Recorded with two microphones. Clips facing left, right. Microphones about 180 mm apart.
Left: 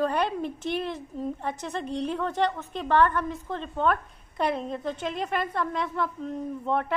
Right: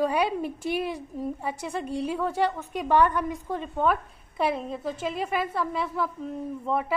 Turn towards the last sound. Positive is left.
turn(degrees=-5)  # may be behind; listen again after turning